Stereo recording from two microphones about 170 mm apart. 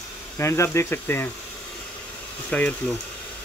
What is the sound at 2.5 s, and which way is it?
Speech, 10° left (ahead or behind).